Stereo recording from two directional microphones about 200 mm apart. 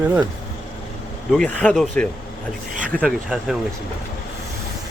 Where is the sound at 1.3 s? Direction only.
5° left (ahead or behind).